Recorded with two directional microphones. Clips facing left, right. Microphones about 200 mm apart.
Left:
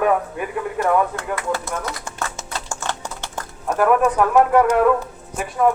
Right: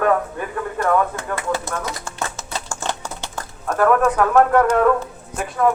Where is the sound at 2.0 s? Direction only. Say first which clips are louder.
Right 1 dB; 20° left (ahead or behind).